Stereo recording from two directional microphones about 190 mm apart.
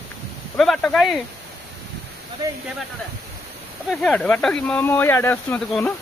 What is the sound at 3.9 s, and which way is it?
Speech, 5° left (ahead or behind).